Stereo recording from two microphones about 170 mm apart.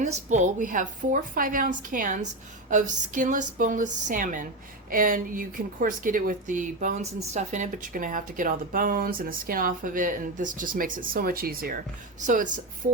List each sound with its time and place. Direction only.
0.0 s a woman's voice: 45° right (ahead or behind)